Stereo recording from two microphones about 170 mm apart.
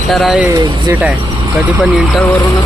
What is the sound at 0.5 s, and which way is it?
Speech, 25° right (ahead or behind).